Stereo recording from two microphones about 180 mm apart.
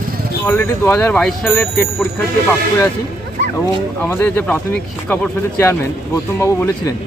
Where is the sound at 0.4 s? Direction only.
15° left (ahead or behind).